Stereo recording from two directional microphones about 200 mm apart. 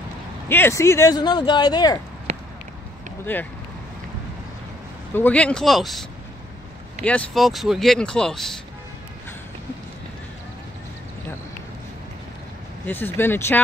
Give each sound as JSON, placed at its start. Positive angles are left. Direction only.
{"t": 0.5, "sound": "speech", "side_deg": 10}
{"t": 3.3, "sound": "speech", "side_deg": 10}
{"t": 5.1, "sound": "speech", "side_deg": 10}
{"t": 12.8, "sound": "speech", "side_deg": 10}